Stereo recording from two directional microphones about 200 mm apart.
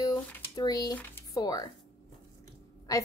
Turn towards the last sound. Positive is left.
turn(degrees=15)  # may be behind; listen again after turning